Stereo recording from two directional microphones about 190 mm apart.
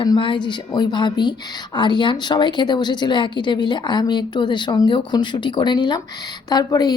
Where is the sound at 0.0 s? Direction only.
25° left (ahead or behind).